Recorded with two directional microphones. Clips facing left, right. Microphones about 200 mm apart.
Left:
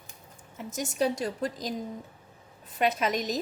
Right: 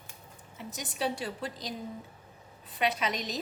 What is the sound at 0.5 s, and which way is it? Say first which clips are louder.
A woman's voice: left 8 dB; 45° left (ahead or behind).